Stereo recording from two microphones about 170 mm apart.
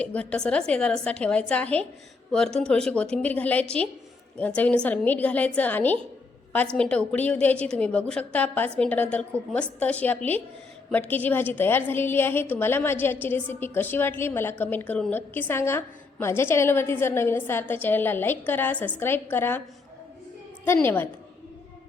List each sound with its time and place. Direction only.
0.0 s a woman's voice: 5° left (ahead or behind)
20.7 s a woman's voice: 10° left (ahead or behind)